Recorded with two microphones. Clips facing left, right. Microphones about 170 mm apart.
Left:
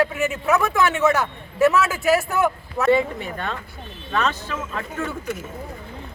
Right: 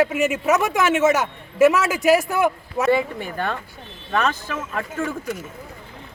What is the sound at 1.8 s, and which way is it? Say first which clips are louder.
Speech: right 3 dB; 10° right (ahead or behind).